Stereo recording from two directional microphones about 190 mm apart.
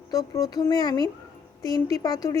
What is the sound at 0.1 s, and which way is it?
Speech, 20° left (ahead or behind).